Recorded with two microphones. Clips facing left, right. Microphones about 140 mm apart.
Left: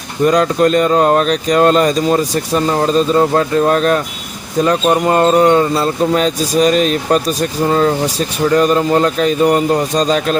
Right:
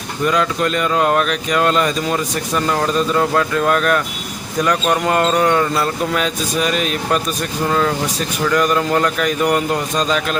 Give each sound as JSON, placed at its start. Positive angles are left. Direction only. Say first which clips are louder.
{"t": 0.3, "sound": "speech", "louder": "left 6 dB", "side_deg": 40}